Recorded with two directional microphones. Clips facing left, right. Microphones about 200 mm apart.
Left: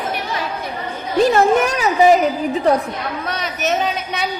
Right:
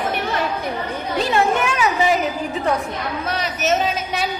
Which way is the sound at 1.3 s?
40° left (ahead or behind).